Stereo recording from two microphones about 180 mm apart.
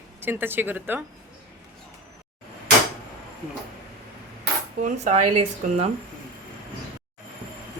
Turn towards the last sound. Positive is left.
turn(degrees=-35)  # may be behind; listen again after turning